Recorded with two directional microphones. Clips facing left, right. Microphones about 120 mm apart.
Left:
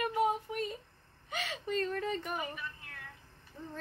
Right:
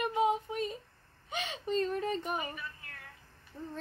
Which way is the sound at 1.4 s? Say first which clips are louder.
Right 2 dB; 20° right (ahead or behind).